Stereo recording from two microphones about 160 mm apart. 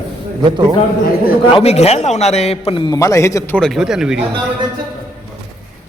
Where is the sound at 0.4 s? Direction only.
30° right (ahead or behind).